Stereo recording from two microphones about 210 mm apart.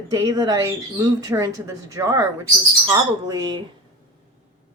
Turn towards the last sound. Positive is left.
turn(degrees=-15)  # may be behind; listen again after turning